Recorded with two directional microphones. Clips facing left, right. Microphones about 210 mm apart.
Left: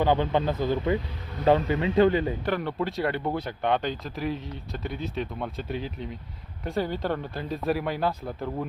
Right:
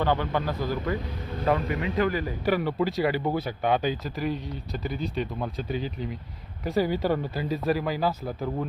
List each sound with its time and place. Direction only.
0.0 s speech: 20° left (ahead or behind)
1.5 s speech: 30° left (ahead or behind)
2.4 s speech: 5° right (ahead or behind)